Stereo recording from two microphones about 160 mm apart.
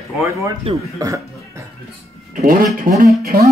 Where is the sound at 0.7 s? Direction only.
35° right (ahead or behind).